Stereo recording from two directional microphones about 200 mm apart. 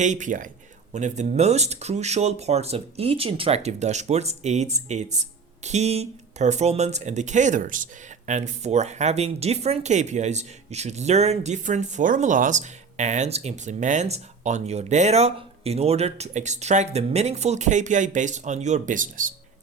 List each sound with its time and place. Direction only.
0.0 s speech: 40° right (ahead or behind)